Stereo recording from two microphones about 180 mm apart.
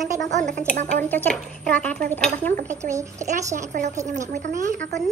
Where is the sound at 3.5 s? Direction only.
40° right (ahead or behind).